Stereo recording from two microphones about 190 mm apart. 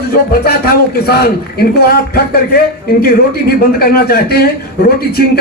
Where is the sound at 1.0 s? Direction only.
55° left (ahead or behind).